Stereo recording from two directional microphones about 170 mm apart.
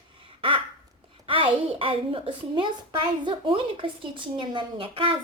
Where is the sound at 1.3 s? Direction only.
30° right (ahead or behind).